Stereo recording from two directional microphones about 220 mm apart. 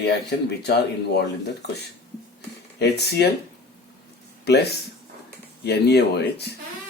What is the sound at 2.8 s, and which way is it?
Speech, 50° left (ahead or behind).